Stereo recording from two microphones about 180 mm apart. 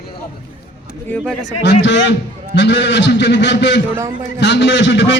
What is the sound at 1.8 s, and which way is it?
A man's voice, 80° left.